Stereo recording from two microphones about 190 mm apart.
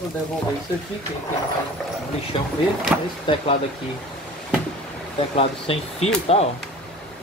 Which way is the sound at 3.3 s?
25° left (ahead or behind).